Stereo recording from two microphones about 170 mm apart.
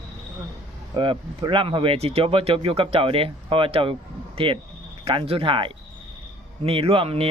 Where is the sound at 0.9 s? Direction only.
30° right (ahead or behind).